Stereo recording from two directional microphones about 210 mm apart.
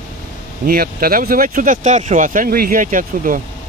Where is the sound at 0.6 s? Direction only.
45° right (ahead or behind).